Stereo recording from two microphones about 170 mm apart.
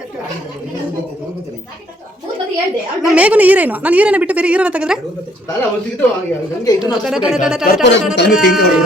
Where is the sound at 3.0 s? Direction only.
10° right (ahead or behind).